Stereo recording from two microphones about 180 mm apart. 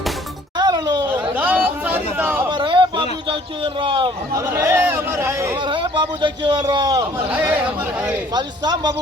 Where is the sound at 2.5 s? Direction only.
25° right (ahead or behind).